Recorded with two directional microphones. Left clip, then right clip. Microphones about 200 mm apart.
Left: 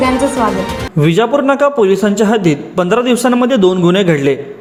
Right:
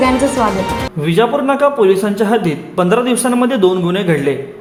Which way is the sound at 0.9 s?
25° left (ahead or behind).